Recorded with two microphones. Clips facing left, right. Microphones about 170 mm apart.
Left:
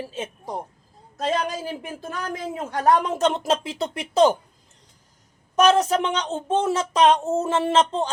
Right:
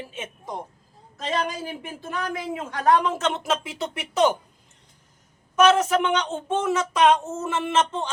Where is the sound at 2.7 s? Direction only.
40° left (ahead or behind).